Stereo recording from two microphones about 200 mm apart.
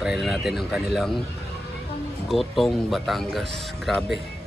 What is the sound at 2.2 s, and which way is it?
Speech, centre (ahead or behind).